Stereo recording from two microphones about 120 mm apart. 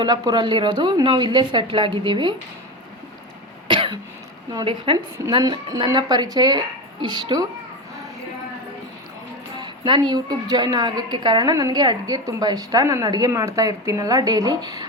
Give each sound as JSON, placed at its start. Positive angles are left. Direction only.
{"t": 0.0, "sound": "a woman's voice", "side_deg": -35}
{"t": 3.7, "sound": "cough", "side_deg": -45}
{"t": 4.9, "sound": "a woman's voice", "side_deg": -45}
{"t": 5.3, "sound": "a woman's voice", "side_deg": -35}
{"t": 9.6, "sound": "a woman's voice", "side_deg": -40}